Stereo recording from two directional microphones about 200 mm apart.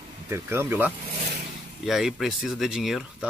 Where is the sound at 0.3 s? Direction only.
10° right (ahead or behind).